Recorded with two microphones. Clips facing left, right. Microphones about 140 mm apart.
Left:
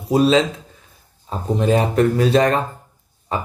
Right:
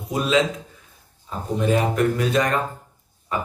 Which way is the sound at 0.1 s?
35° left (ahead or behind).